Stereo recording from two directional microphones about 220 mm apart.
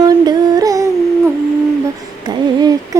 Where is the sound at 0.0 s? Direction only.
15° right (ahead or behind).